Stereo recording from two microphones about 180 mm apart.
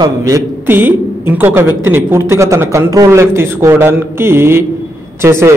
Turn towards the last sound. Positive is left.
turn(degrees=-15)  # may be behind; listen again after turning